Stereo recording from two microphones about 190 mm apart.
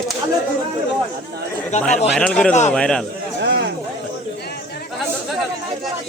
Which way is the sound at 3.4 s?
60° right (ahead or behind).